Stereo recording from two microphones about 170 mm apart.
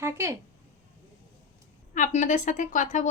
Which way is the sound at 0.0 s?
15° right (ahead or behind).